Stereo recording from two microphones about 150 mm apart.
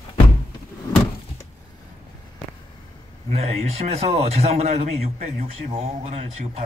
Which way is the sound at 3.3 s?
45° right (ahead or behind).